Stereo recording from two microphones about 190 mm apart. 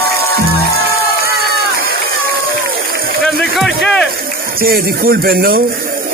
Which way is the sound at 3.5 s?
Centre (ahead or behind).